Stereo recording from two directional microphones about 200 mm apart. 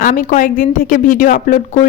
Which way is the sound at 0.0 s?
40° left (ahead or behind).